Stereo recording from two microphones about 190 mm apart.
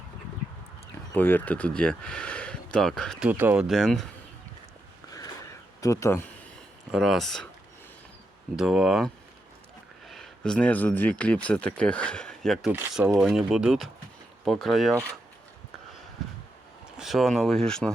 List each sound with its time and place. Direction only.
1.1 s speech: 10° left (ahead or behind)
3.2 s speech: 10° right (ahead or behind)
5.1 s a sound: 15° left (ahead or behind)
6.9 s speech: centre (ahead or behind)
8.5 s speech: 5° right (ahead or behind)
10.1 s speech: 5° left (ahead or behind)
17.0 s speech: centre (ahead or behind)